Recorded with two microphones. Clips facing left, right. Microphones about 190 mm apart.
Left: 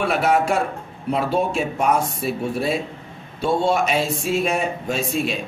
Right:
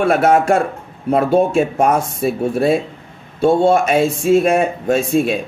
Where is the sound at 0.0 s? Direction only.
50° right (ahead or behind).